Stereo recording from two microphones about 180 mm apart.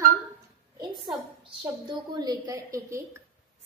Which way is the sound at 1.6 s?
25° right (ahead or behind).